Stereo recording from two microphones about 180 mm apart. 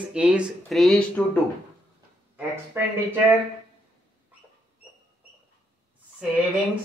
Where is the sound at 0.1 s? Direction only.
5° right (ahead or behind).